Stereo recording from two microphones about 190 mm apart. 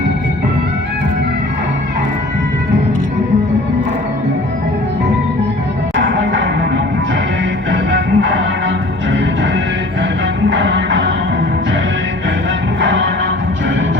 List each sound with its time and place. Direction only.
6.0 s music: 70° right (ahead or behind)
7.7 s music: 70° right (ahead or behind)
10.5 s music: 70° right (ahead or behind)
12.8 s music: 75° right (ahead or behind)